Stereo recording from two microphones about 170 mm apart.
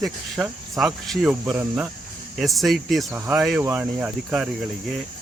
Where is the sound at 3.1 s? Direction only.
10° right (ahead or behind).